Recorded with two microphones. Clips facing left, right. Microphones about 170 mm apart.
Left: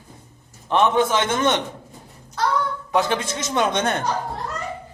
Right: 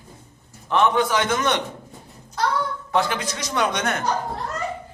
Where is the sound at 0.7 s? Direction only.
25° left (ahead or behind).